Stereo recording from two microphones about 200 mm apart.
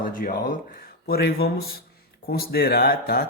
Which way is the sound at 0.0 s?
45° left (ahead or behind).